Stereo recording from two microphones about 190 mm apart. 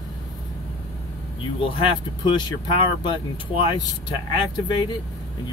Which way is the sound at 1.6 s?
25° left (ahead or behind).